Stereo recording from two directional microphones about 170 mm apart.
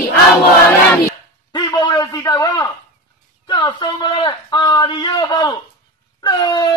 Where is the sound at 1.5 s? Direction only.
25° left (ahead or behind).